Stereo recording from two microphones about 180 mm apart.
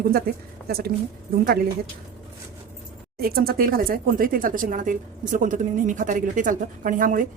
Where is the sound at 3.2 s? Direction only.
55° right (ahead or behind).